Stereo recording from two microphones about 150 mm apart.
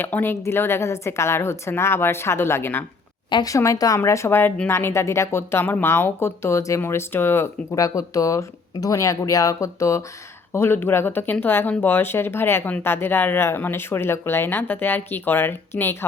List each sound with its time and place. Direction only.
0.0 s speech: 15° left (ahead or behind)
3.2 s speech: 25° left (ahead or behind)